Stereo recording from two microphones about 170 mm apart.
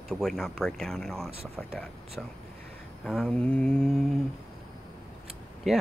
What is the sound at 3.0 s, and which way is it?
Speech, centre (ahead or behind).